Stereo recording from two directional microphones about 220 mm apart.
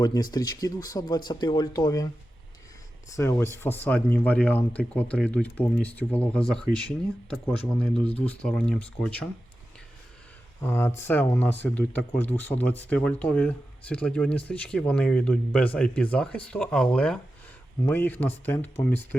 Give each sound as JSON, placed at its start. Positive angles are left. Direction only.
{"t": 0.0, "sound": "speech", "side_deg": 20}
{"t": 3.1, "sound": "speech", "side_deg": 15}
{"t": 10.6, "sound": "speech", "side_deg": 10}